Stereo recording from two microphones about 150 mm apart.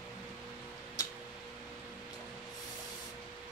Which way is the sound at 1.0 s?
25° left (ahead or behind).